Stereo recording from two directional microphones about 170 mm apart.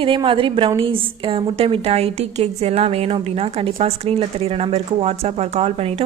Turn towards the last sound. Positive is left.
turn(degrees=-40)  # may be behind; listen again after turning